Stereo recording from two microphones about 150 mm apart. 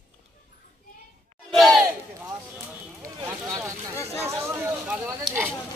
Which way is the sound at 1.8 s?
15° right (ahead or behind).